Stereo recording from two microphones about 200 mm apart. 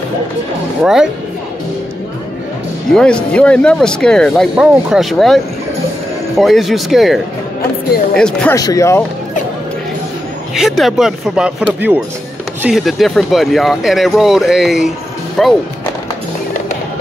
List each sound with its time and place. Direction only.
0.8 s speech: 5° right (ahead or behind)
2.9 s speech: 5° left (ahead or behind)
8.5 s speech: 15° left (ahead or behind)
10.5 s speech: centre (ahead or behind)